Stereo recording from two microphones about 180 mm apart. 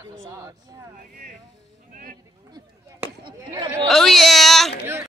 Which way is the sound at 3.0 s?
25° right (ahead or behind).